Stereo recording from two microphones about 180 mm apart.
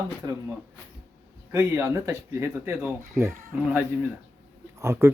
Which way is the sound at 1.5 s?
15° right (ahead or behind).